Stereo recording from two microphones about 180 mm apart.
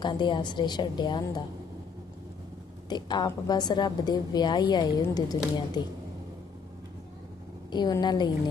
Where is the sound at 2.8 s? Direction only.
25° left (ahead or behind).